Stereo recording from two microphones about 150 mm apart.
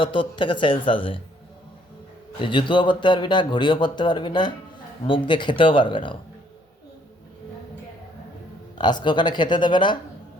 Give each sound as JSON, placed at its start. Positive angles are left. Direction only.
{"t": 0.0, "sound": "speech", "side_deg": 35}
{"t": 2.4, "sound": "speech", "side_deg": 35}
{"t": 8.8, "sound": "speech", "side_deg": 30}